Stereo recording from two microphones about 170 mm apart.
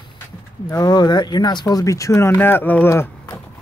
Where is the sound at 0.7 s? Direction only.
20° left (ahead or behind).